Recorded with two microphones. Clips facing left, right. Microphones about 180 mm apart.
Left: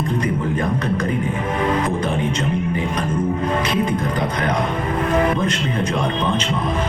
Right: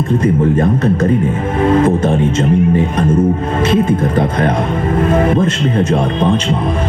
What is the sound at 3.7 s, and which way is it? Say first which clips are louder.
Speech: right 7 dB; 25° right (ahead or behind).